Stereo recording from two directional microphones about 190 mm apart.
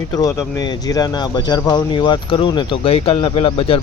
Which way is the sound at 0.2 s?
15° left (ahead or behind).